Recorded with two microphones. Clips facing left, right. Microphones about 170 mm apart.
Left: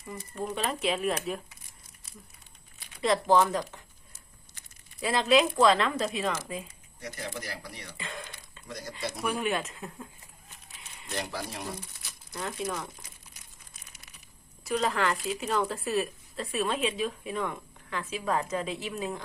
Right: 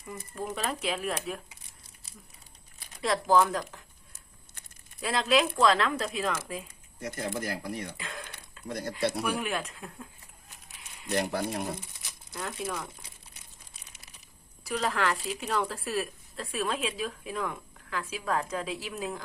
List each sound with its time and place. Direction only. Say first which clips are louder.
0.3 s a woman's voice: left 2 dB; centre (ahead or behind)
3.0 s a woman's voice: left 1 dB; centre (ahead or behind)
4.9 s a woman's voice: left 2 dB; centre (ahead or behind)
7.0 s speech: right 5 dB; 50° right (ahead or behind)
7.9 s a sound: left 1 dB; centre (ahead or behind)
8.6 s speech: right 6 dB; 55° right (ahead or behind)
9.4 s a woman's voice: left 3 dB; centre (ahead or behind)
11.1 s speech: right 6 dB; 55° right (ahead or behind)
12.3 s a woman's voice: left 1 dB; centre (ahead or behind)
14.6 s a woman's voice: left 1 dB; centre (ahead or behind)